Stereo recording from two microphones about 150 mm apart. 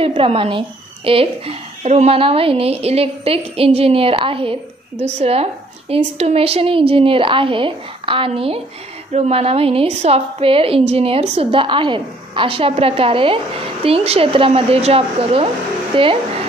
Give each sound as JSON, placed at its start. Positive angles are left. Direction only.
{"t": 0.0, "sound": "a woman's voice", "side_deg": -40}